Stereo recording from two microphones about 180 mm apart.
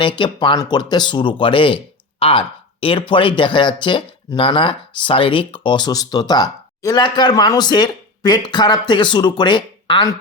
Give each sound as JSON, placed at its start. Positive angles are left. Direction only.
{"t": 0.0, "sound": "speech", "side_deg": 25}